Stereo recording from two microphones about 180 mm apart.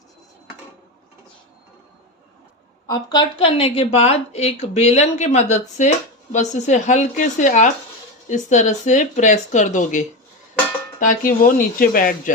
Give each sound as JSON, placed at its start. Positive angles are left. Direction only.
{"t": 2.8, "sound": "speech", "side_deg": 20}